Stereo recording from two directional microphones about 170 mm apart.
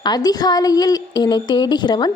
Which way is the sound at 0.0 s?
25° left (ahead or behind).